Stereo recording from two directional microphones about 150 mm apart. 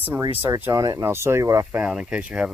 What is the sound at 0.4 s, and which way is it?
Speech, 20° right (ahead or behind).